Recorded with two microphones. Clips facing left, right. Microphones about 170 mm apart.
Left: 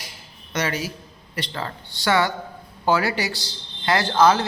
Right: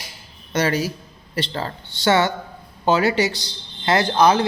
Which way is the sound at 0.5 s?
35° right (ahead or behind).